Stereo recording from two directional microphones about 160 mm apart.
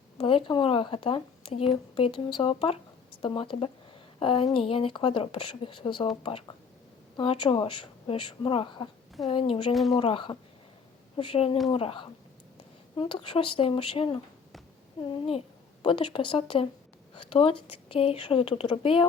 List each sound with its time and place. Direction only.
0.2 s speech: 35° left (ahead or behind)
7.2 s speech: 30° left (ahead or behind)
15.8 s speech: 30° left (ahead or behind)